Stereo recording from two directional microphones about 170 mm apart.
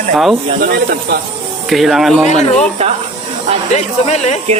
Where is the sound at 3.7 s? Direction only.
40° left (ahead or behind).